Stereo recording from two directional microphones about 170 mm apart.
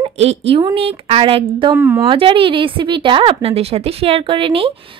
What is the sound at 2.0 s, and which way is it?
A woman's voice, 30° right (ahead or behind).